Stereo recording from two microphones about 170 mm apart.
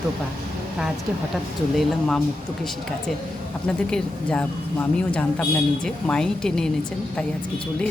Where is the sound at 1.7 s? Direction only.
Centre (ahead or behind).